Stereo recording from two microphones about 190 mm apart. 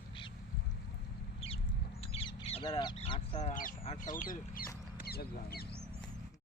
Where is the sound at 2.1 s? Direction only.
25° left (ahead or behind); by 3.7 s 40° left (ahead or behind).